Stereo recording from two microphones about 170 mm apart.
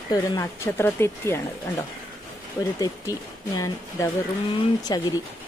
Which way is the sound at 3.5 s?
20° left (ahead or behind).